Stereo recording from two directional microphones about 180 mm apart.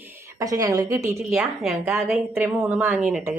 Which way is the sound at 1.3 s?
5° right (ahead or behind).